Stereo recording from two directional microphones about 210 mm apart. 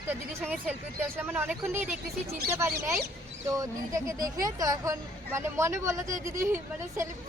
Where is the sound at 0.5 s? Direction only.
10° right (ahead or behind).